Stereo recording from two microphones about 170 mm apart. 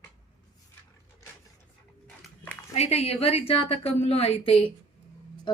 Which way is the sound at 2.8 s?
35° left (ahead or behind).